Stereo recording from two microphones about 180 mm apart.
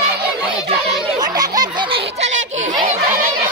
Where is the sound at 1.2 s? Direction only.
20° right (ahead or behind).